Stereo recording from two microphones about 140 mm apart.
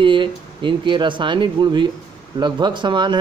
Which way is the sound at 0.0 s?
35° right (ahead or behind).